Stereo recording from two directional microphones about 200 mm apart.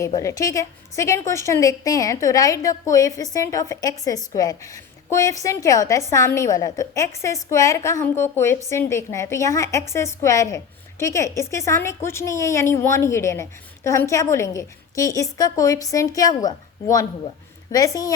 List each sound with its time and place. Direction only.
0.2 s a woman's voice: 15° left (ahead or behind)